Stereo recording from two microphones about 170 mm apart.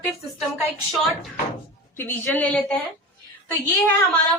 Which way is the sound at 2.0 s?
15° left (ahead or behind).